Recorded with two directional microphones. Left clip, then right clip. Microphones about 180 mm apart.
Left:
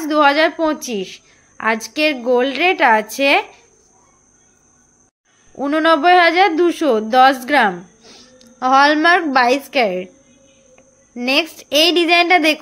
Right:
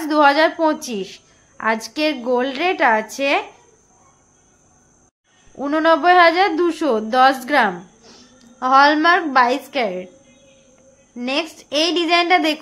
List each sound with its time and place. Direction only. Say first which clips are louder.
0.0 s a woman's voice: left 1 dB; 10° left (ahead or behind)
5.6 s a woman's voice: left 2 dB; 15° left (ahead or behind)
11.1 s a woman's voice: left 5 dB; 20° left (ahead or behind)